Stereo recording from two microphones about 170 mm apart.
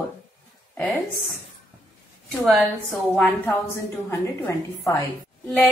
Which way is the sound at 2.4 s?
Centre (ahead or behind).